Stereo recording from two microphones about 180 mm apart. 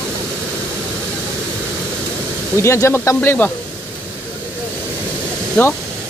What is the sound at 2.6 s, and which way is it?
Speech, 15° left (ahead or behind).